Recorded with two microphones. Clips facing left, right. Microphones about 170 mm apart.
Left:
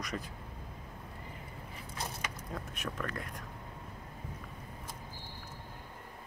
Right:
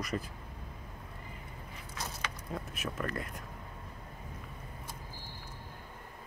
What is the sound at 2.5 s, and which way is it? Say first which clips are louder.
Speech: right 3 dB; 5° right (ahead or behind).